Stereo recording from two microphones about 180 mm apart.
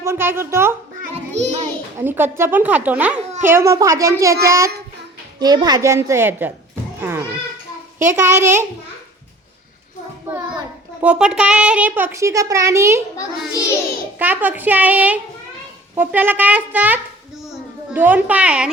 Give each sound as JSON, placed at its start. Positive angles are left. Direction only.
{"t": 0.0, "sound": "a child's voice", "side_deg": -15}
{"t": 1.1, "sound": "child singing", "side_deg": -40}
{"t": 2.0, "sound": "a child's voice", "side_deg": -10}
{"t": 10.2, "sound": "a sound", "side_deg": -10}
{"t": 11.0, "sound": "a child's voice", "side_deg": -5}
{"t": 14.2, "sound": "a child's voice", "side_deg": -10}